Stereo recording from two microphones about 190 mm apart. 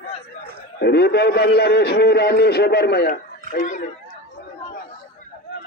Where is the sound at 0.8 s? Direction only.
60° left (ahead or behind).